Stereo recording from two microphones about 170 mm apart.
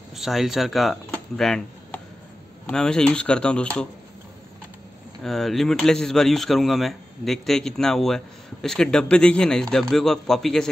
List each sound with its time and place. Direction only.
0.1 s speech: centre (ahead or behind)
5.2 s speech: centre (ahead or behind)